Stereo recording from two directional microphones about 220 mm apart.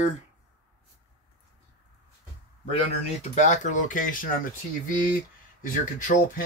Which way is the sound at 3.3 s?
35° left (ahead or behind).